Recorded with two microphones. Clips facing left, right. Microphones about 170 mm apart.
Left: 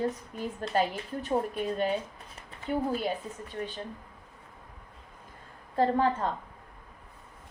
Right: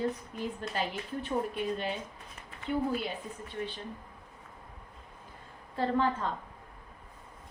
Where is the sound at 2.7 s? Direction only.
40° left (ahead or behind).